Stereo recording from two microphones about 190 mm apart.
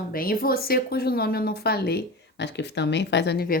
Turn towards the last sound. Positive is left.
turn(degrees=55)  # may be behind; listen again after turning